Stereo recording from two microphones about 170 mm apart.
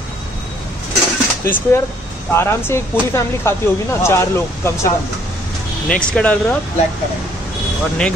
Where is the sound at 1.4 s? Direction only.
15° left (ahead or behind).